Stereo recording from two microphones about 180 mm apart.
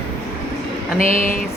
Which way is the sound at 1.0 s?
50° left (ahead or behind).